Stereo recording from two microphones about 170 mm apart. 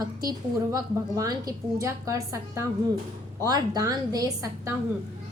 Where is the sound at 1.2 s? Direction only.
20° right (ahead or behind).